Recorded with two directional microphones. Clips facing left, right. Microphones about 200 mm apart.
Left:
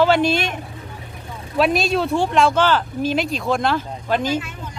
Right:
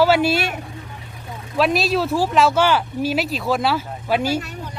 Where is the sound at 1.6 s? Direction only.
Centre (ahead or behind).